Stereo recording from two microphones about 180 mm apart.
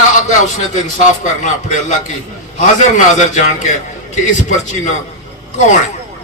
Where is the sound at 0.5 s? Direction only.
45° left (ahead or behind).